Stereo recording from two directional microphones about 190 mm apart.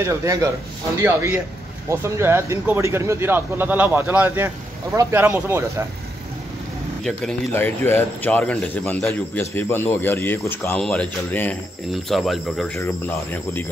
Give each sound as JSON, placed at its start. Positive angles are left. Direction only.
{"t": 0.0, "sound": "speech", "side_deg": -15}
{"t": 7.0, "sound": "speech", "side_deg": 0}